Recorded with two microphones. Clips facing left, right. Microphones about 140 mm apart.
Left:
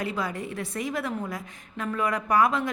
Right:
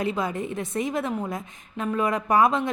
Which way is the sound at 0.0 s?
20° right (ahead or behind).